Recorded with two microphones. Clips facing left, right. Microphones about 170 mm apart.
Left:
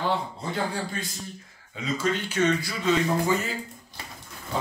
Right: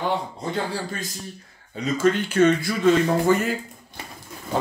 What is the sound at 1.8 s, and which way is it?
Speech, 50° right (ahead or behind).